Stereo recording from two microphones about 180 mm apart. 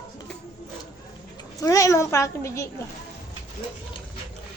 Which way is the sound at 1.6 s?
20° left (ahead or behind).